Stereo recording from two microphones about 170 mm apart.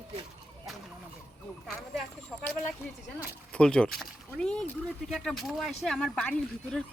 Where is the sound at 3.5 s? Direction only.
5° left (ahead or behind).